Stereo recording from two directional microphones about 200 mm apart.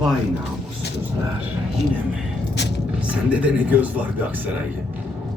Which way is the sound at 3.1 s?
5° right (ahead or behind).